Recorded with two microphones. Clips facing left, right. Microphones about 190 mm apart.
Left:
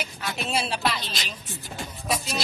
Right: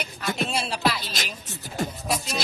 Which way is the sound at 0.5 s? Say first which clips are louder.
Left 3 dB; centre (ahead or behind).